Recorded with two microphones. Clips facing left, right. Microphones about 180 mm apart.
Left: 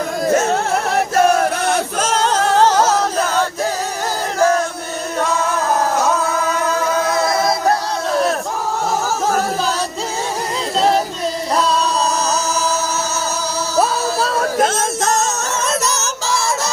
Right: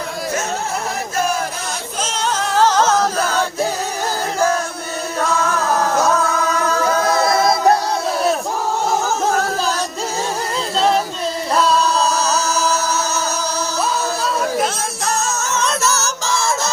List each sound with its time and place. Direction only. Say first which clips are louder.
0.5 s singing: left 6 dB; 65° left (ahead or behind)
2.6 s music: even; 15° left (ahead or behind)
14.6 s music: left 4 dB; 45° left (ahead or behind)
15.8 s music: right 1 dB; centre (ahead or behind)